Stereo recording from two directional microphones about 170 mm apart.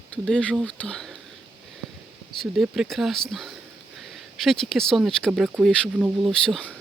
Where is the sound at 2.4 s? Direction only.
Centre (ahead or behind).